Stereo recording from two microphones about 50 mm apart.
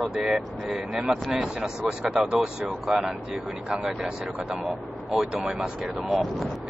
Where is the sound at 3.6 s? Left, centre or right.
Centre.